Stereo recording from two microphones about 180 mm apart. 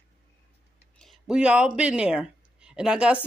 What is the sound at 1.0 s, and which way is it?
Speech, centre (ahead or behind).